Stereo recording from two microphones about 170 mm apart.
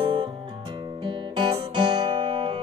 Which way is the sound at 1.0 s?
30° right (ahead or behind).